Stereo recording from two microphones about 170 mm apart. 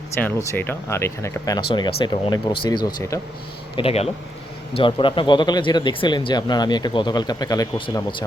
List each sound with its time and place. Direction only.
0.5 s speech: 10° left (ahead or behind)
3.8 s speech: 35° left (ahead or behind)